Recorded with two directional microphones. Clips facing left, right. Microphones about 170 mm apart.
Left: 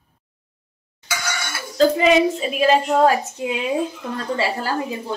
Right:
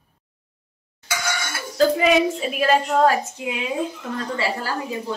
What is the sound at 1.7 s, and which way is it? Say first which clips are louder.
A woman's voice: left 2 dB; centre (ahead or behind).